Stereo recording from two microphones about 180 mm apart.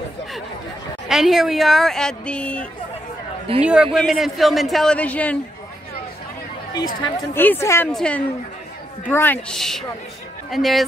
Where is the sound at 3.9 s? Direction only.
Centre (ahead or behind).